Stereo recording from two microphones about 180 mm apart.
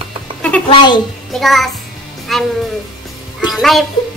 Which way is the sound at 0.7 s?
25° left (ahead or behind).